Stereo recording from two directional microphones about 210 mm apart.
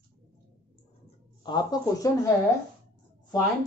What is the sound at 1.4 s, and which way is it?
Speech, 20° left (ahead or behind).